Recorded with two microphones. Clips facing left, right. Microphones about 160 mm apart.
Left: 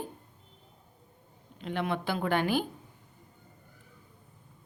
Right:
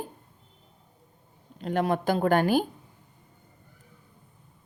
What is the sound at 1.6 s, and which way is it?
A woman's voice, 40° right (ahead or behind).